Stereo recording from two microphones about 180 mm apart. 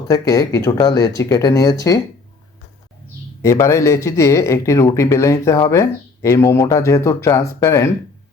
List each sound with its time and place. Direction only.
0.1 s speech: 20° left (ahead or behind)
3.4 s speech: 15° left (ahead or behind)